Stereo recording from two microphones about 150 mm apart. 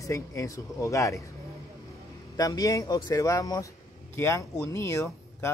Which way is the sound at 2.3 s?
25° left (ahead or behind).